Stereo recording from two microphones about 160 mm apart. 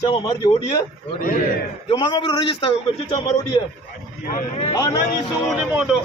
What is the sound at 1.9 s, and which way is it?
Speech, 30° left (ahead or behind).